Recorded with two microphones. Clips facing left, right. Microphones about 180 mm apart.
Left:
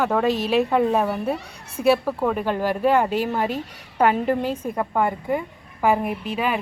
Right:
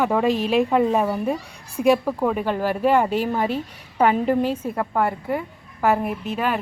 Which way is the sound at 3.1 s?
5° left (ahead or behind).